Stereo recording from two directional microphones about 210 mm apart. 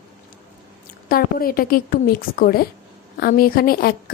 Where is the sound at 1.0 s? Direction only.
45° left (ahead or behind).